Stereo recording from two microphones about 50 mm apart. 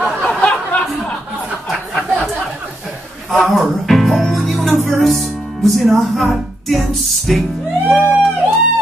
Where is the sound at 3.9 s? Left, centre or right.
Centre.